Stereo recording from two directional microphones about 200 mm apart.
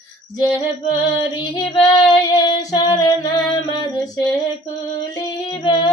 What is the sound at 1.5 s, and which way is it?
Female singing, 20° left (ahead or behind).